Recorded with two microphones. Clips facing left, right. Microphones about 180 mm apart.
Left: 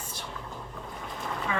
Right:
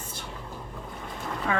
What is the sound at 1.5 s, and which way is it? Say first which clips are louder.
Speech: right 4 dB; 60° right (ahead or behind).